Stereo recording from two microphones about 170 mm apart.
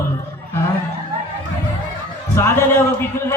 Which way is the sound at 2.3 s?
15° left (ahead or behind).